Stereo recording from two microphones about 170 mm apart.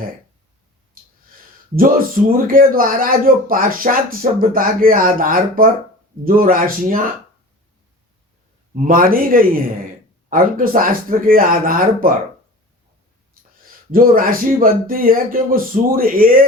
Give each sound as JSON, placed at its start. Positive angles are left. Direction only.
{"t": 1.7, "sound": "speech", "side_deg": -55}
{"t": 8.7, "sound": "speech", "side_deg": -55}
{"t": 13.4, "sound": "a sound", "side_deg": -55}
{"t": 13.9, "sound": "speech", "side_deg": -55}